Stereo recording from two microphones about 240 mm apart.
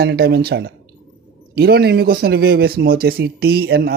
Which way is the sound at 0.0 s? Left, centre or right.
Right.